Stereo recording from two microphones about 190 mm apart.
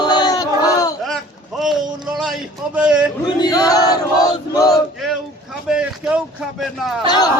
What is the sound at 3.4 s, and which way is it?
Choir, 20° left (ahead or behind).